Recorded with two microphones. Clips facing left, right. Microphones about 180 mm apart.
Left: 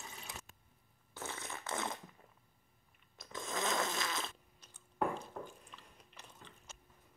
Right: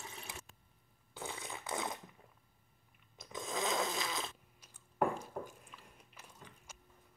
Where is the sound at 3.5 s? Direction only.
15° right (ahead or behind).